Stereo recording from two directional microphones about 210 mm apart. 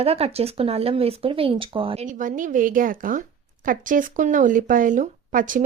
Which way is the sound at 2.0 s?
40° right (ahead or behind).